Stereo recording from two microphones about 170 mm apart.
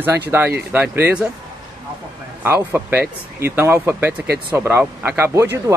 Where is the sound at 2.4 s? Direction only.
10° right (ahead or behind).